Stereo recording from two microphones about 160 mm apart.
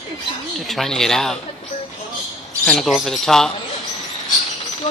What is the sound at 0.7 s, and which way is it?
Speech, centre (ahead or behind).